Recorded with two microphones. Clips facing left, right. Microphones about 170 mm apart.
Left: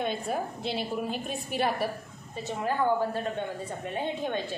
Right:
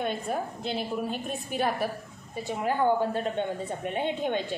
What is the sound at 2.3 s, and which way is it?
A woman's voice, 10° right (ahead or behind).